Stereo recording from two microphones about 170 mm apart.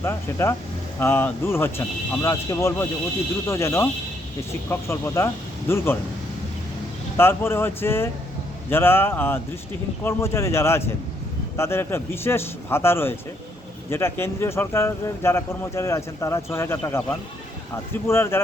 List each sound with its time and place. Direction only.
0.0 s speech: 15° left (ahead or behind)
7.2 s speech: 15° left (ahead or behind)